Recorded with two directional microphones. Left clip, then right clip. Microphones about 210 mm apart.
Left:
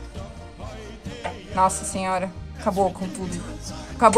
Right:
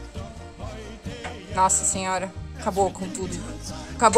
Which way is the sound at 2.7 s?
Centre (ahead or behind).